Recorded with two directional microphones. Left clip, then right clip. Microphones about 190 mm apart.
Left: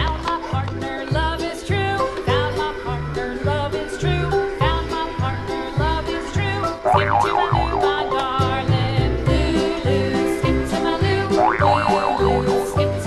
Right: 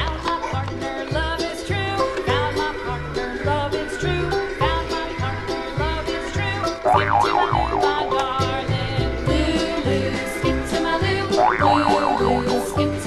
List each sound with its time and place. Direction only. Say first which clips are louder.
1.9 s music: even; centre (ahead or behind)
6.6 s music: even; centre (ahead or behind)